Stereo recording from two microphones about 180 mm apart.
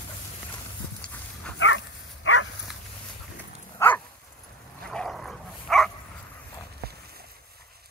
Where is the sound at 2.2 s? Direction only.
90° left.